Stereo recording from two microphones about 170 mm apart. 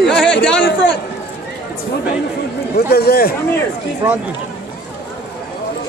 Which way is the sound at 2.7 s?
65° left (ahead or behind).